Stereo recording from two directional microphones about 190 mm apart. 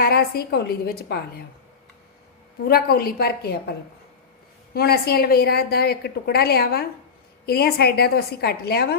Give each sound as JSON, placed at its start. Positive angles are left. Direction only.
{"t": 0.0, "sound": "a woman's voice", "side_deg": 55}
{"t": 2.6, "sound": "a woman's voice", "side_deg": 55}
{"t": 4.7, "sound": "a woman's voice", "side_deg": 55}